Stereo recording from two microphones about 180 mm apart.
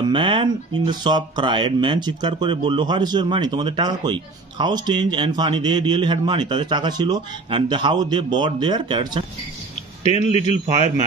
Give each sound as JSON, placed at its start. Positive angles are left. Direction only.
{"t": 0.0, "sound": "speech", "side_deg": -25}
{"t": 10.0, "sound": "a man's voice", "side_deg": 35}